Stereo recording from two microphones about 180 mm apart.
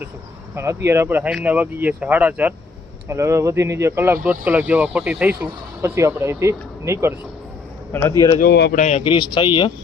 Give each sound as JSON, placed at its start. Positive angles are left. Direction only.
{"t": 0.5, "sound": "speech", "side_deg": -15}
{"t": 8.4, "sound": "speech", "side_deg": 65}
{"t": 8.7, "sound": "speech", "side_deg": 40}